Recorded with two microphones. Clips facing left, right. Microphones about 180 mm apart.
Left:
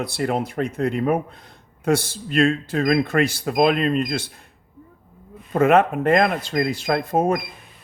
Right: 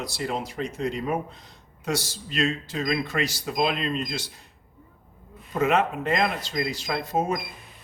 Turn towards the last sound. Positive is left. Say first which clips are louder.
# left 6 dB
turn(degrees=55)  # may be behind; listen again after turning